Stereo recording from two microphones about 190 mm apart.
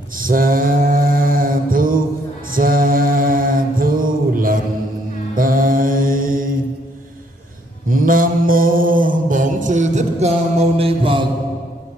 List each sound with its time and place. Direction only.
0.2 s mantra: 50° right (ahead or behind)
7.9 s mantra: 45° right (ahead or behind); by 11.2 s 30° right (ahead or behind)